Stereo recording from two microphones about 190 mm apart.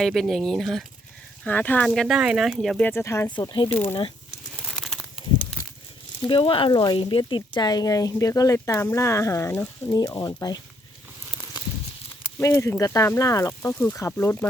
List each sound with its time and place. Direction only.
0.0 s speech: centre (ahead or behind)
1.9 s speech: centre (ahead or behind)
2.9 s speech: 15° left (ahead or behind)
3.7 s speech: 10° left (ahead or behind)
4.5 s crumpling: centre (ahead or behind)
6.2 s speech: 30° left (ahead or behind)
12.4 s speech: 15° left (ahead or behind)